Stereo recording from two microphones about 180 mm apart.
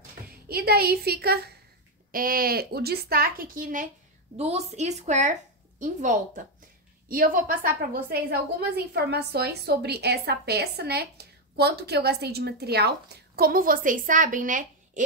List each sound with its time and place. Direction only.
0.5 s a woman's voice: 60° right (ahead or behind)
4.4 s a woman's voice: 35° right (ahead or behind)